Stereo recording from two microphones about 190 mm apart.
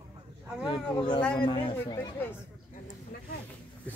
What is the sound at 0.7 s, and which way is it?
Speech, 25° left (ahead or behind).